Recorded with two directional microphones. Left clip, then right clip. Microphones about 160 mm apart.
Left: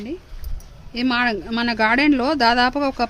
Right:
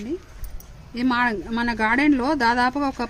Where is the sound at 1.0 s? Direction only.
90° left.